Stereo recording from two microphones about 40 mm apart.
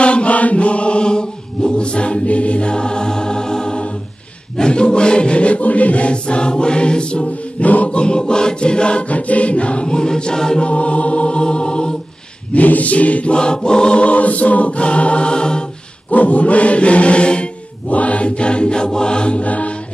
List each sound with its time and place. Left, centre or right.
0.0 s chant: left
4.6 s choir: left
7.6 s choir: left; by 10.6 s centre
10.6 s choir: left
12.5 s choir: left
13.4 s choir: left
16.1 s choir: left